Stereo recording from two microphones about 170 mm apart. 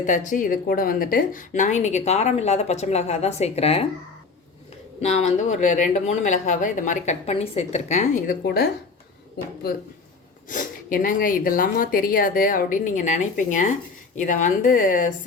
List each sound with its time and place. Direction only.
0.0 s a woman's voice: 50° left (ahead or behind)
4.9 s a woman's voice: 40° left (ahead or behind)
10.5 s a woman's voice: 55° left (ahead or behind)